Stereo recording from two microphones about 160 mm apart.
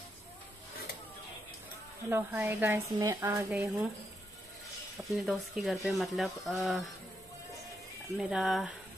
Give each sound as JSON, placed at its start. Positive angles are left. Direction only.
{"t": 2.0, "sound": "a woman's voice", "side_deg": -10}
{"t": 3.4, "sound": "speech", "side_deg": -5}
{"t": 4.9, "sound": "speech", "side_deg": 0}
{"t": 8.2, "sound": "speech", "side_deg": 0}